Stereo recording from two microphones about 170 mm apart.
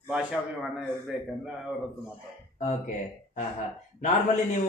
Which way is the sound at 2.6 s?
50° left (ahead or behind).